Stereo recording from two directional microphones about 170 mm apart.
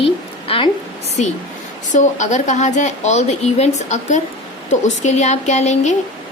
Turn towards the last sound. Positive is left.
turn(degrees=45)  # may be behind; listen again after turning